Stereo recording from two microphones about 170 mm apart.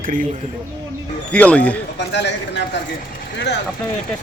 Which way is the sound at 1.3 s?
5° left (ahead or behind).